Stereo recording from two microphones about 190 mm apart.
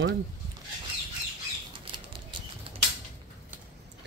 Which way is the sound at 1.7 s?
25° right (ahead or behind).